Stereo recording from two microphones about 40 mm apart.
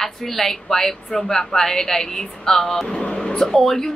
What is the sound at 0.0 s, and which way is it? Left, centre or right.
Speech, centre.